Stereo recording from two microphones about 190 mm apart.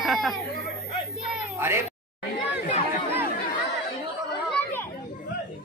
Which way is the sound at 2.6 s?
40° left (ahead or behind).